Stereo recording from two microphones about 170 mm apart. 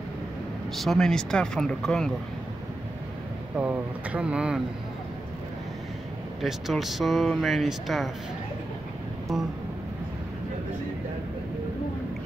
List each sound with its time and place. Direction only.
0.7 s speech: centre (ahead or behind)
3.5 s speech: 10° right (ahead or behind)
6.4 s speech: centre (ahead or behind)
9.3 s speech: centre (ahead or behind)